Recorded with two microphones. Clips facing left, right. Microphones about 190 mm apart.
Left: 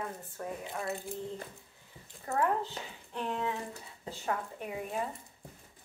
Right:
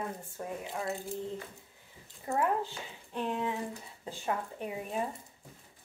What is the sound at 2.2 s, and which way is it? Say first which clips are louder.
Speech: even; 15° right (ahead or behind).